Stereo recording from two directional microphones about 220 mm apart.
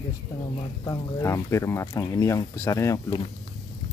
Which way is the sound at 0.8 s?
15° left (ahead or behind).